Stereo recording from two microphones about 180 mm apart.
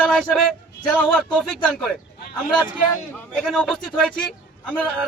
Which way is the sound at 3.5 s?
Centre (ahead or behind).